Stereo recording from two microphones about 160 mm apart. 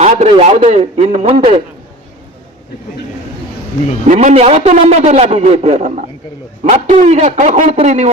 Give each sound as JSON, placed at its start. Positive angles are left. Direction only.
{"t": 0.0, "sound": "a man's voice", "side_deg": -45}
{"t": 4.0, "sound": "a man's voice", "side_deg": -50}